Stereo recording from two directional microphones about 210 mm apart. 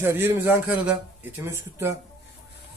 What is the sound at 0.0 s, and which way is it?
Speech, 10° right (ahead or behind).